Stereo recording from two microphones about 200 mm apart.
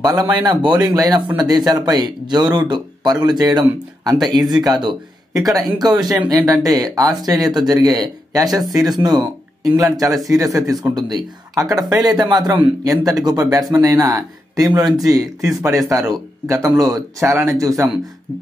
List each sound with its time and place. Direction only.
0.0 s speech: 20° right (ahead or behind)